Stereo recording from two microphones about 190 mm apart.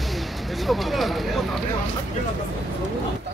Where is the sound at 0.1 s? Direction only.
Centre (ahead or behind).